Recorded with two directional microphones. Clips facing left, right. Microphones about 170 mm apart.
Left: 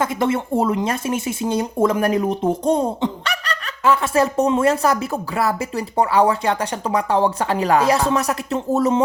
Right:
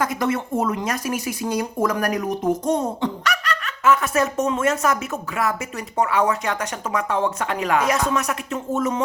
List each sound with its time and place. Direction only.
0.0 s speech: 25° left (ahead or behind)